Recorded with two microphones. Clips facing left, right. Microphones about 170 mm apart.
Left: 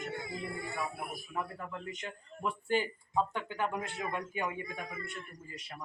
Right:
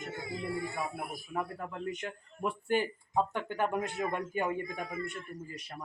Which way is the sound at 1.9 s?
55° right (ahead or behind).